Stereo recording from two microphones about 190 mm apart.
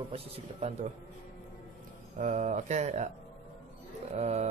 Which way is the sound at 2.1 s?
40° right (ahead or behind).